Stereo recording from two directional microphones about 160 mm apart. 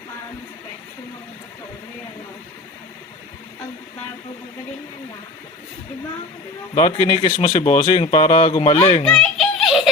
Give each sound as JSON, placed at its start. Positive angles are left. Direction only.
{"t": 6.7, "sound": "speech", "side_deg": 40}
{"t": 9.0, "sound": "giggle", "side_deg": 5}